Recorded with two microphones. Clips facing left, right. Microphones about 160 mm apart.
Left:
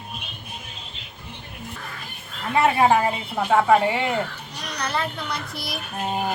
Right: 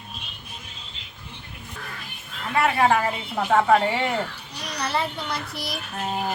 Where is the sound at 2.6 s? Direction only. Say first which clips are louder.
Left 2 dB; 20° left (ahead or behind).